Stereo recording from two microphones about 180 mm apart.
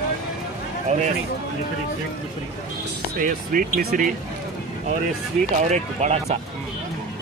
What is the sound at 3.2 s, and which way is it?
Speech, 50° right (ahead or behind).